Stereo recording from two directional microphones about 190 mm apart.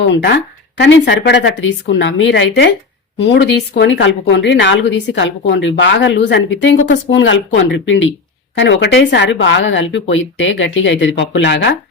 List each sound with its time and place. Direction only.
0.0 s speech: 75° left (ahead or behind)